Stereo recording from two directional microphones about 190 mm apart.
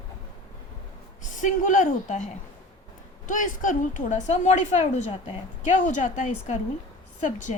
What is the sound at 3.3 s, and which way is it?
A woman's voice, 45° left (ahead or behind).